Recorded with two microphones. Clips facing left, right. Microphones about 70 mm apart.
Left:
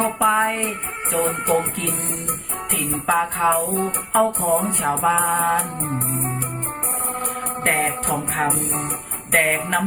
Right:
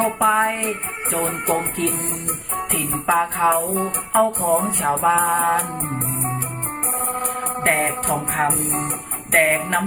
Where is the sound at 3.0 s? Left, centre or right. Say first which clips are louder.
Right 1 dB; centre.